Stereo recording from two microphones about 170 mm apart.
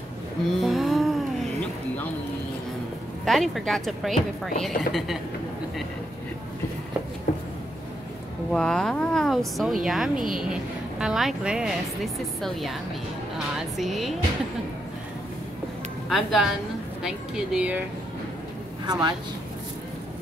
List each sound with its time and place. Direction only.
0.5 s a sound: centre (ahead or behind)
3.3 s speech: centre (ahead or behind)
8.5 s speech: 5° left (ahead or behind)
13.7 s speech: centre (ahead or behind)
16.1 s a woman's voice: centre (ahead or behind)
18.9 s speech: 25° right (ahead or behind)